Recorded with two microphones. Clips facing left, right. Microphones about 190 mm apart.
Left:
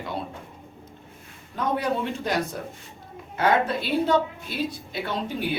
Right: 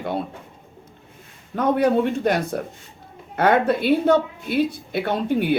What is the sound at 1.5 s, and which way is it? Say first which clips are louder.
A woman's voice: right 7 dB; 55° right (ahead or behind).